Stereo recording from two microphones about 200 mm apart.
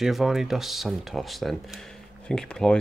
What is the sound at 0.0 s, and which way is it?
Speech, centre (ahead or behind).